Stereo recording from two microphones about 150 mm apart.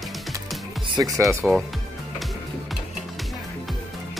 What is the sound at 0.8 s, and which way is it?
Music, 25° right (ahead or behind).